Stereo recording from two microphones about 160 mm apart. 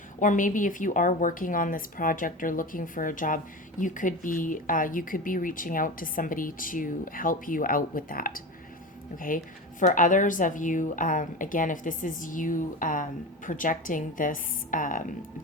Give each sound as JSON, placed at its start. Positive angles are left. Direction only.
{"t": 0.2, "sound": "a woman's voice", "side_deg": 55}